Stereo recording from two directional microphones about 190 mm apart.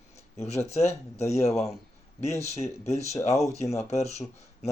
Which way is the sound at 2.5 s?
35° left (ahead or behind).